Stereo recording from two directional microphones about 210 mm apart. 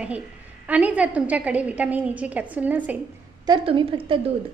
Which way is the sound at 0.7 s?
5° right (ahead or behind).